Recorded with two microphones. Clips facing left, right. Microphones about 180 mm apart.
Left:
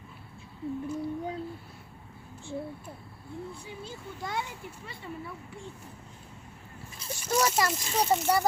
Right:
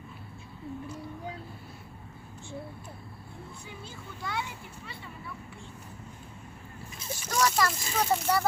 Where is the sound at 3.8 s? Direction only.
45° left (ahead or behind).